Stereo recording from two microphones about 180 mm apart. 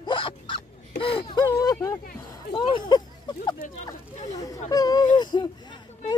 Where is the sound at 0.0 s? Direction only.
30° left (ahead or behind).